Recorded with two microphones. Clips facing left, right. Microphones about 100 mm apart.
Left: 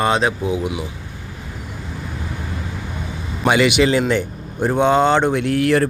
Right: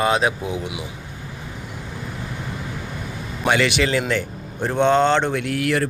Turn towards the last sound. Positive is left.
turn(degrees=35)  # may be behind; listen again after turning